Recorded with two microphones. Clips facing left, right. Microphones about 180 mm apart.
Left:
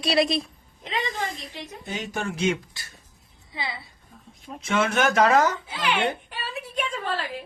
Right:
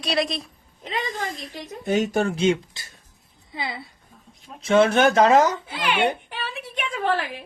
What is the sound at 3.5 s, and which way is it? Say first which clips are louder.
Speech: right 2 dB; 50° right (ahead or behind).